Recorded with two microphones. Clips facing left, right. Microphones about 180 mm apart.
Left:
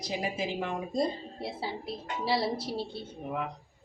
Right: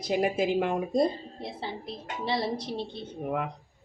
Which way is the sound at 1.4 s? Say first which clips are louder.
Left 1 dB; 5° left (ahead or behind).